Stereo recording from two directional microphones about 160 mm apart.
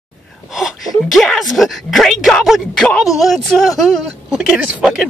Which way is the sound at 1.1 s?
Centre (ahead or behind).